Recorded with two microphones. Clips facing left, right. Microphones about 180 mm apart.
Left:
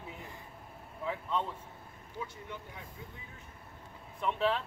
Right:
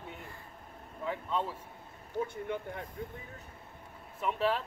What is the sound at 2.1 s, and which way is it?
Speech, 55° right (ahead or behind).